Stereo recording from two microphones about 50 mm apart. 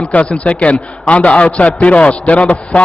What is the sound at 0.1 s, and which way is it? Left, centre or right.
A man's voice, left.